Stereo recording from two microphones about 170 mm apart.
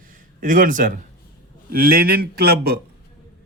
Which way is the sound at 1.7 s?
60° right (ahead or behind).